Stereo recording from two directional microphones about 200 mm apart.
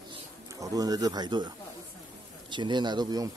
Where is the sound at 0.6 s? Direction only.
20° right (ahead or behind).